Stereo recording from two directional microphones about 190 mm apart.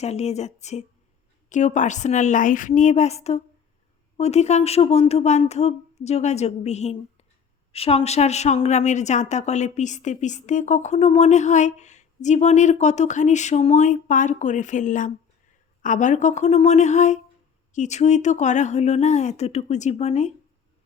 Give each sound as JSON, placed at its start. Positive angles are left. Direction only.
{"t": 0.0, "sound": "a woman's voice", "side_deg": 35}